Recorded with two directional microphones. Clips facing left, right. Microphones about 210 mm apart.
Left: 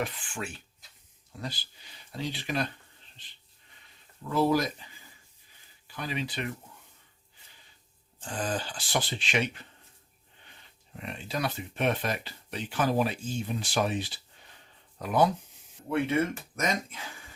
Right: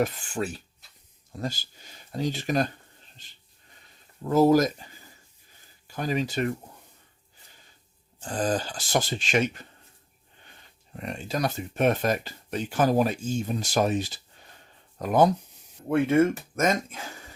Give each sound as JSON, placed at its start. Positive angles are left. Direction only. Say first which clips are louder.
{"t": 0.0, "sound": "speech", "louder": "right 7 dB", "side_deg": -40}
{"t": 8.2, "sound": "speech", "louder": "right 6 dB", "side_deg": -40}
{"t": 10.9, "sound": "speech", "louder": "right 4 dB", "side_deg": -45}